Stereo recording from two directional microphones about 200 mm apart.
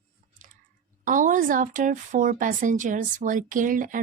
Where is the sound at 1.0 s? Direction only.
40° right (ahead or behind).